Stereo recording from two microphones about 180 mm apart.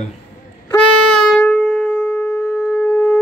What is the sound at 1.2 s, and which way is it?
Shofar, 5° left (ahead or behind).